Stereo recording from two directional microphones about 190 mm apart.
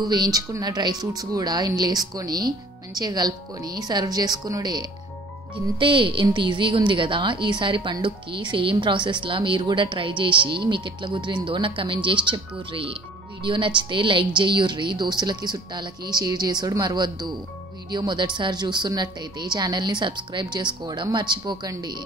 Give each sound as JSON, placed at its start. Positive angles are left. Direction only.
{"t": 0.0, "sound": "a woman's voice", "side_deg": -20}